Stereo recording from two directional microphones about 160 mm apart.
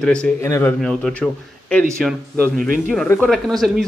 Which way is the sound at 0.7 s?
Centre (ahead or behind).